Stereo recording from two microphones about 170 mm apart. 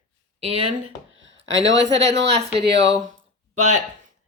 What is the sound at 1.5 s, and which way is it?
Speech, 90° right.